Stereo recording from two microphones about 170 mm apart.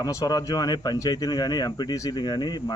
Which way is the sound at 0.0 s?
20° left (ahead or behind).